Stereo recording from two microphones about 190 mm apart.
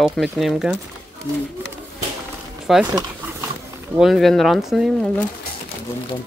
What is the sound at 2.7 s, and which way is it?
Speech, centre (ahead or behind).